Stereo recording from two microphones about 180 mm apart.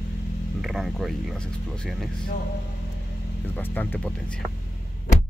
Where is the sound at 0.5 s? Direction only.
Centre (ahead or behind).